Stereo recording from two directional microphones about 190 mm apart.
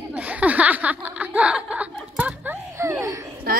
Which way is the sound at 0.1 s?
5° right (ahead or behind).